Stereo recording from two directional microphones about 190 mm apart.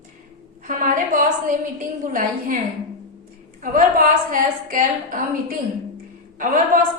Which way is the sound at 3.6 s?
45° right (ahead or behind).